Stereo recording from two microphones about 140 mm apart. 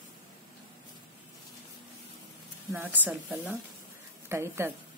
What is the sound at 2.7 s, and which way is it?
Speech, 15° right (ahead or behind).